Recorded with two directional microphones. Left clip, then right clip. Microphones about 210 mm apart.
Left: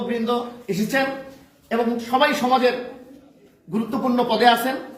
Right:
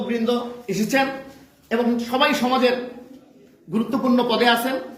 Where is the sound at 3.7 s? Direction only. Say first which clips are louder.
Right 1 dB; 20° left (ahead or behind).